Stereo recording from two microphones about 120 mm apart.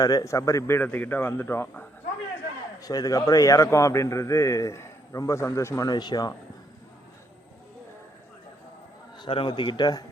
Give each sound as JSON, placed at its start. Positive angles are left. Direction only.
{"t": 0.0, "sound": "a man's voice", "side_deg": 35}
{"t": 0.8, "sound": "a man's voice", "side_deg": 15}
{"t": 2.8, "sound": "a man's voice", "side_deg": 30}
{"t": 9.1, "sound": "a man's voice", "side_deg": 40}